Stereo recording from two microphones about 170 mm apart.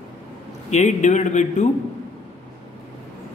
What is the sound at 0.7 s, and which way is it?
Speech, 45° left (ahead or behind).